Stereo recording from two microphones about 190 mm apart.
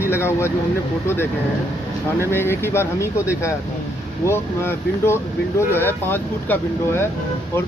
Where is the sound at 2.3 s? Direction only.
10° left (ahead or behind).